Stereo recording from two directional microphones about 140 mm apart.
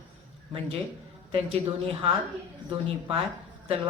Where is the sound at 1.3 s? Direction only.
45° right (ahead or behind).